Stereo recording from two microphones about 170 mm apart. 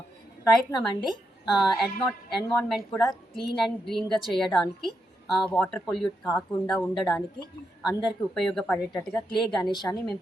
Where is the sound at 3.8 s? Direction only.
Centre (ahead or behind).